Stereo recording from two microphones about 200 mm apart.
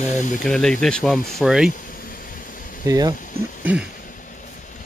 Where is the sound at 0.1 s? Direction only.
35° left (ahead or behind).